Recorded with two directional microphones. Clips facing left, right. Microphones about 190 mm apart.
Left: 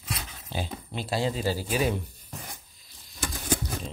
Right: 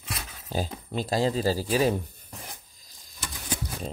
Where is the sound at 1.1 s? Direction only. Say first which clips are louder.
Right 3 dB; 40° right (ahead or behind).